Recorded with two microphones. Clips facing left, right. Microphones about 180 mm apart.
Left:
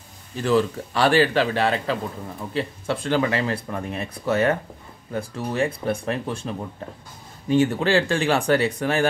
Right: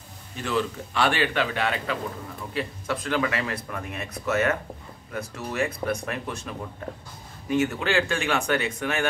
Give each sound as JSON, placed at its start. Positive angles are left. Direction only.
{"t": 0.4, "sound": "speech", "side_deg": 35}